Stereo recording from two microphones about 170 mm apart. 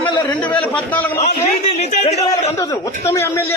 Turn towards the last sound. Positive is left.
turn(degrees=15)  # may be behind; listen again after turning